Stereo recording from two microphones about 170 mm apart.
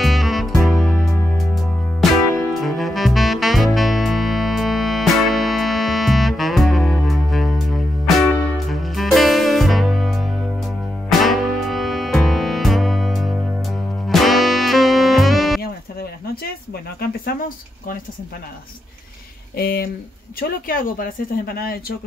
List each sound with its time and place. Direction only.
0.0 s music: centre (ahead or behind)
19.5 s speech: 65° left (ahead or behind)